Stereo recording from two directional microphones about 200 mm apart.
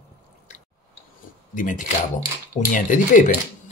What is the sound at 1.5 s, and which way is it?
Speech, 40° left (ahead or behind).